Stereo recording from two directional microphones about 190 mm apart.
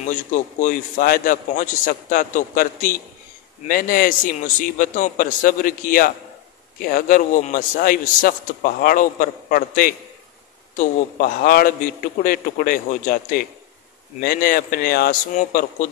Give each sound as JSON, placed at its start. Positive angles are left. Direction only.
{"t": 0.0, "sound": "a man's voice", "side_deg": 40}